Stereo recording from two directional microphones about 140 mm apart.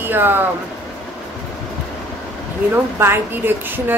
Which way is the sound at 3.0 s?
15° right (ahead or behind).